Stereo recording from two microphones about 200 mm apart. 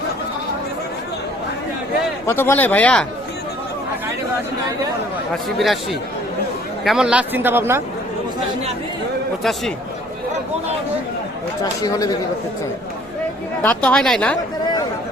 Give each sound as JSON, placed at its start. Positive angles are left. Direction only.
{"t": 2.2, "sound": "speech", "side_deg": 10}
{"t": 5.5, "sound": "a woman's voice", "side_deg": 0}
{"t": 9.4, "sound": "a woman's voice", "side_deg": 0}
{"t": 11.6, "sound": "speech", "side_deg": 20}
{"t": 13.6, "sound": "a woman's voice", "side_deg": 5}